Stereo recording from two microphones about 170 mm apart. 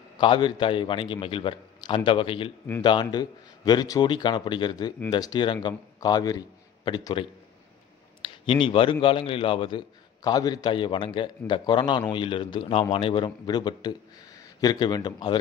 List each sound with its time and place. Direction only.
0.2 s a man's voice: 30° left (ahead or behind)
8.2 s a sound: 30° left (ahead or behind)
9.0 s a man's voice: 30° left (ahead or behind)